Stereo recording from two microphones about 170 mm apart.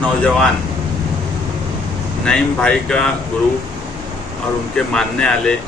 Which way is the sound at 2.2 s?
5° left (ahead or behind).